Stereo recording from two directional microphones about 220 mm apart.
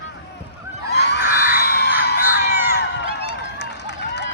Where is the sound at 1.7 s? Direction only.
50° left (ahead or behind).